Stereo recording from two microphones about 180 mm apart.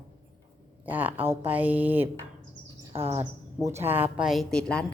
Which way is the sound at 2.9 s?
30° right (ahead or behind).